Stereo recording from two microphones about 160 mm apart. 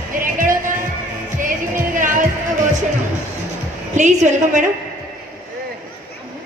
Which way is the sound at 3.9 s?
50° right (ahead or behind).